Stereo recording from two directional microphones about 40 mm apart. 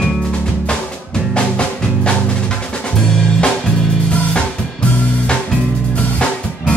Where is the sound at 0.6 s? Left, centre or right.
Left.